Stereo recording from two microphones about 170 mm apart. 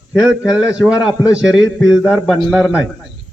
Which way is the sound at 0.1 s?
5° right (ahead or behind).